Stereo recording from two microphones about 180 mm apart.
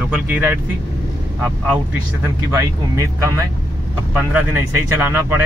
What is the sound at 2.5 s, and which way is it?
Speech, 15° right (ahead or behind).